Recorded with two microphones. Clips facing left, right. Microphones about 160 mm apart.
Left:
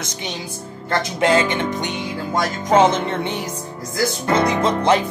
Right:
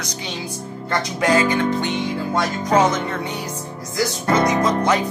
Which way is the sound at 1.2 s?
25° left (ahead or behind).